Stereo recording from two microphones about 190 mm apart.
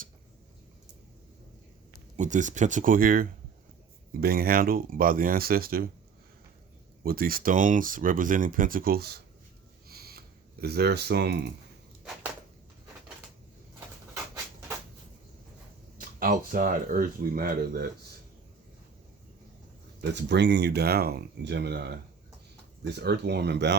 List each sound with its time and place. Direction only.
2.1 s speech: 40° right (ahead or behind)
7.0 s speech: 50° right (ahead or behind)
9.9 s a sound: 55° right (ahead or behind)
16.0 s speech: 45° right (ahead or behind)
20.0 s speech: 65° right (ahead or behind)